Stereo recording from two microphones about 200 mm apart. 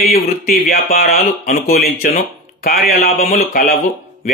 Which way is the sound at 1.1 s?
30° left (ahead or behind).